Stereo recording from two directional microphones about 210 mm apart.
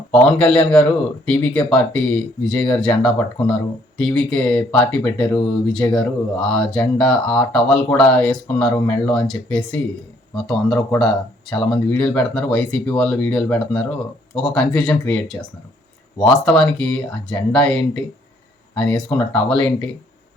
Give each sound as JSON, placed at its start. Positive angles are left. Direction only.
{"t": 0.1, "sound": "speech", "side_deg": 5}
{"t": 8.6, "sound": "speech", "side_deg": 20}
{"t": 9.1, "sound": "speech", "side_deg": 5}